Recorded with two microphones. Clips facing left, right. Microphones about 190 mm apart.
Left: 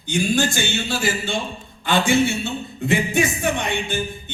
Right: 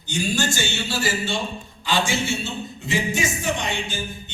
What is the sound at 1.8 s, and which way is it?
A man's voice, 55° left (ahead or behind).